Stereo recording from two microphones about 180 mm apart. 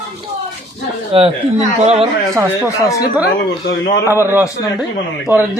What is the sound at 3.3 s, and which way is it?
Speech, 65° left (ahead or behind).